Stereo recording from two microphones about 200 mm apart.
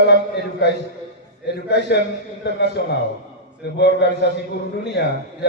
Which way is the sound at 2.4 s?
60° left (ahead or behind).